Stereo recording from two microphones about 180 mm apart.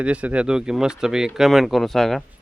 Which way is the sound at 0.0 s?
5° right (ahead or behind).